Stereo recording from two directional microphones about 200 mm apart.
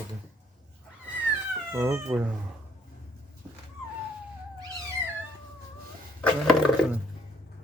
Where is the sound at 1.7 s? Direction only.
10° right (ahead or behind).